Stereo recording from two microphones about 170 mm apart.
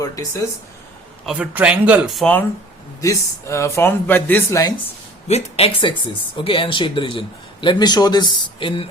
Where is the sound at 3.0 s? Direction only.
20° left (ahead or behind).